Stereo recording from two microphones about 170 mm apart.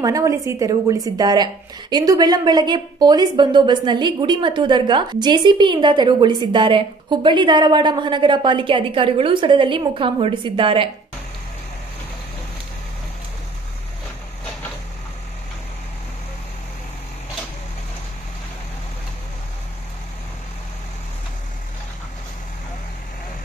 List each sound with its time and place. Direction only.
0.0 s a woman's voice: 20° right (ahead or behind)